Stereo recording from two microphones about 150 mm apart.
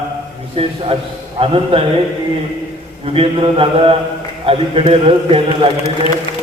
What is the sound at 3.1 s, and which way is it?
A man's voice, 40° right (ahead or behind).